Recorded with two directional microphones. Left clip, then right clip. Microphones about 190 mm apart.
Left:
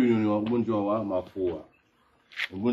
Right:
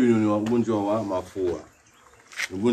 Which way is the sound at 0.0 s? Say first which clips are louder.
Right 3 dB; 50° left (ahead or behind).